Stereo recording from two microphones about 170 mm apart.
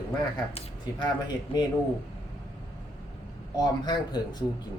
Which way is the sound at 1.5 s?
35° left (ahead or behind).